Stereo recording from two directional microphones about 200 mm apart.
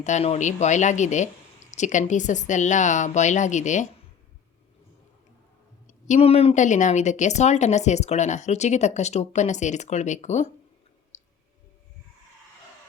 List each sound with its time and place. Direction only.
0.0 s speech: 35° left (ahead or behind)
5.9 s speech: 35° left (ahead or behind)
11.1 s a sound: 35° left (ahead or behind)